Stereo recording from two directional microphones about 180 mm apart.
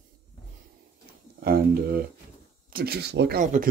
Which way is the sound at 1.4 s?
55° right (ahead or behind).